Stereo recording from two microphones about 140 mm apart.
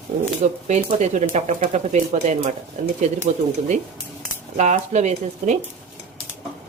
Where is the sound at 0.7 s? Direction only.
55° right (ahead or behind).